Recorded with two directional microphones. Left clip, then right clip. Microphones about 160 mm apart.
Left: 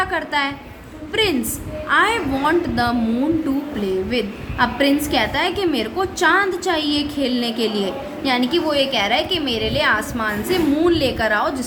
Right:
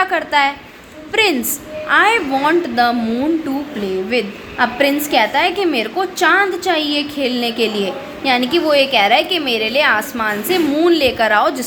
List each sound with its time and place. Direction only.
0.0 s a woman's voice: 25° right (ahead or behind)
4.1 s a woman's voice: 20° right (ahead or behind)